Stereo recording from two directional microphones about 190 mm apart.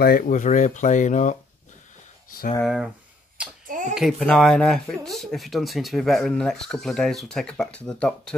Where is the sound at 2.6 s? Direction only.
5° right (ahead or behind).